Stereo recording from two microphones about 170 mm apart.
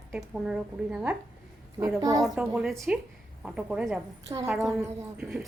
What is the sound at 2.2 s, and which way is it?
A woman's voice, centre (ahead or behind).